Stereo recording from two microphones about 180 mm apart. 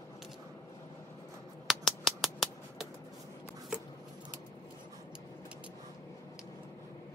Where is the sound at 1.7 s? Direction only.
Centre (ahead or behind).